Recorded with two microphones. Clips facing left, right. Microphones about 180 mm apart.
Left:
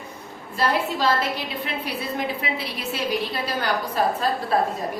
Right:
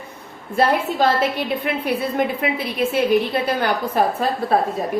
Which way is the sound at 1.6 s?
55° right (ahead or behind).